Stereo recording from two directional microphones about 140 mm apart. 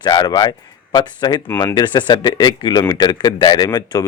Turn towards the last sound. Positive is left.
turn(degrees=30)  # may be behind; listen again after turning